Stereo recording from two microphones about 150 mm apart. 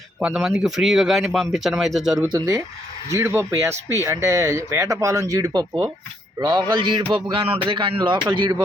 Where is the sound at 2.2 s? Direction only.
25° right (ahead or behind).